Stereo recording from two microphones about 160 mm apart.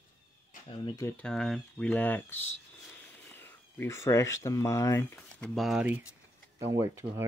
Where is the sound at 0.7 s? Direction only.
25° left (ahead or behind).